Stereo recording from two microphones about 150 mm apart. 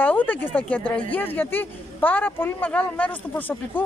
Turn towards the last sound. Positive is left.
turn(degrees=10)  # may be behind; listen again after turning